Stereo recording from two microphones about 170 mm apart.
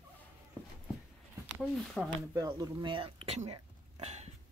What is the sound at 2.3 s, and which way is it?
Speech, 20° right (ahead or behind).